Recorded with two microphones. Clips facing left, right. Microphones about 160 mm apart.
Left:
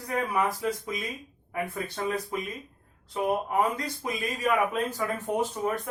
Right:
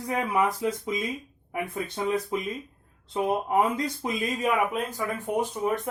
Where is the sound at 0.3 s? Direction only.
20° right (ahead or behind).